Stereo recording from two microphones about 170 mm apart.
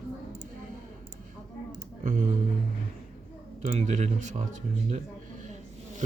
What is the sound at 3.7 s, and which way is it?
Speech, 40° right (ahead or behind).